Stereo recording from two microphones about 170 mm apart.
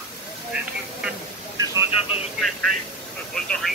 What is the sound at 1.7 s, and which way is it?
Vehicle, 15° right (ahead or behind).